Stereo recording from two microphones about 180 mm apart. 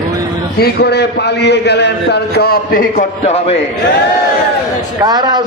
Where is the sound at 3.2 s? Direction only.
35° left (ahead or behind).